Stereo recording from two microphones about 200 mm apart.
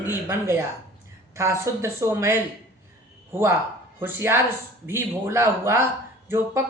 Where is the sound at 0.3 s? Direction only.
10° right (ahead or behind).